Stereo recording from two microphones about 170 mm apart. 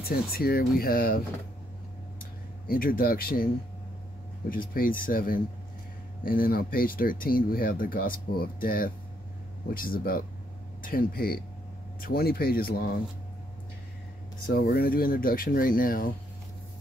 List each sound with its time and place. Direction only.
0.0 s speech: 65° left (ahead or behind)
2.6 s speech: 60° left (ahead or behind)
4.5 s speech: 55° left (ahead or behind)
14.4 s speech: 65° left (ahead or behind)